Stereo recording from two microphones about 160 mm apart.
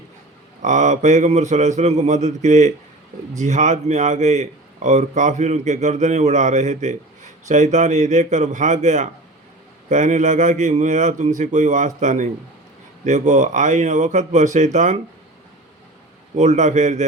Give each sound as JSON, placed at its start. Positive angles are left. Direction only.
{"t": 0.6, "sound": "a man's voice", "side_deg": -50}
{"t": 16.4, "sound": "a man's voice", "side_deg": -50}